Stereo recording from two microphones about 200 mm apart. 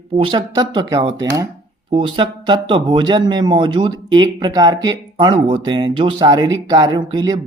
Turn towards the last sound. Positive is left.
turn(degrees=-20)  # may be behind; listen again after turning